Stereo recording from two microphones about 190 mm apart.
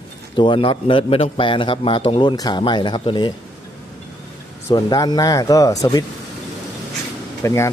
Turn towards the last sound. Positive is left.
turn(degrees=15)  # may be behind; listen again after turning